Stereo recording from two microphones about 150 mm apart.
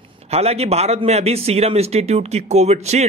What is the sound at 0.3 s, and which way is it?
A man's voice, 45° right (ahead or behind).